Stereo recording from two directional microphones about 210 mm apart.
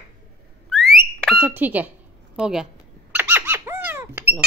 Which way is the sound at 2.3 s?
5° right (ahead or behind).